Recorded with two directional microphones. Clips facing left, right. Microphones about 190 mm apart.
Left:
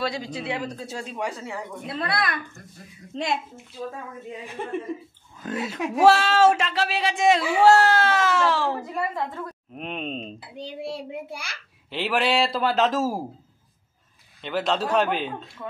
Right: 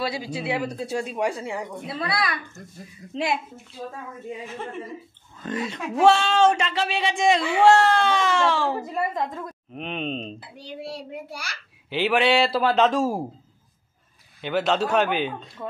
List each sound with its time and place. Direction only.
0.0 s speech: 5° right (ahead or behind)
2.0 s speech: centre (ahead or behind)
5.4 s speech: 5° left (ahead or behind)
8.9 s speech: 15° right (ahead or behind)
9.8 s speech: centre (ahead or behind)
11.9 s speech: centre (ahead or behind)
14.4 s speech: centre (ahead or behind)